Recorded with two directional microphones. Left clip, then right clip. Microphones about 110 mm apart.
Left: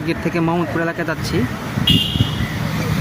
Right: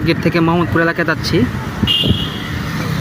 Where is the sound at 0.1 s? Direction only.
30° right (ahead or behind).